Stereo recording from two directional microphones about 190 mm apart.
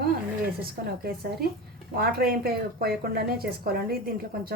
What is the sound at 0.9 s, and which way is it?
A woman's voice, 55° right (ahead or behind).